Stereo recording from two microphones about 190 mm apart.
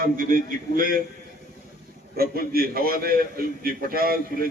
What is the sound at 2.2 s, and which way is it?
A man's voice, 50° right (ahead or behind).